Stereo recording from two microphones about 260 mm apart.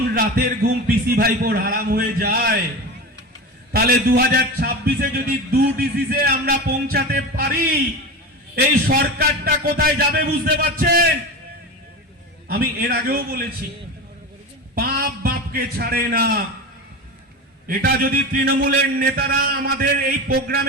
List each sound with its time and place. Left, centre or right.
0.1 s a man's voice: right
3.7 s a man's voice: right
12.5 s a man's voice: right
14.8 s a man's voice: right
17.7 s a man's voice: right